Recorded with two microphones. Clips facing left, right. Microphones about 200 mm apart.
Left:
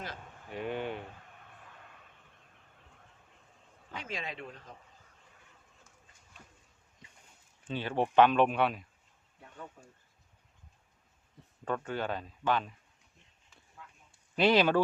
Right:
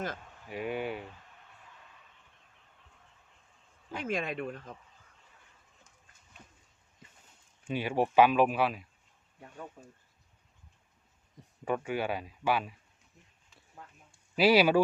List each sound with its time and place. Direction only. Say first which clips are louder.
0.5 s speech: right 1 dB; 10° right (ahead or behind)
3.9 s speech: right 7 dB; 50° right (ahead or behind)
7.0 s a sound: right 2 dB; 5° right (ahead or behind)
7.6 s speech: right 2 dB; 10° right (ahead or behind)
11.6 s speech: right 2 dB; 10° right (ahead or behind)
14.3 s speech: right 2 dB; 10° right (ahead or behind)